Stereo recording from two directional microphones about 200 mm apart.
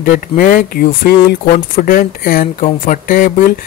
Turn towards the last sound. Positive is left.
turn(degrees=40)  # may be behind; listen again after turning